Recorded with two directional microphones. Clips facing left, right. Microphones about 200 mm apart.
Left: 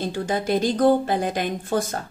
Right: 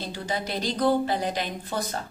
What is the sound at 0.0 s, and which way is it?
Speech, 50° left (ahead or behind).